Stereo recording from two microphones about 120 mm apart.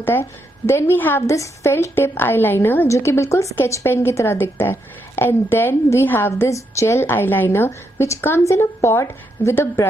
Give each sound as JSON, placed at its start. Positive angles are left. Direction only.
{"t": 0.0, "sound": "a woman's voice", "side_deg": 20}